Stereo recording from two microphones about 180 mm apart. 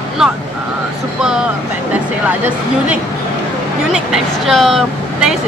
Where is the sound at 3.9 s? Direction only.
Centre (ahead or behind).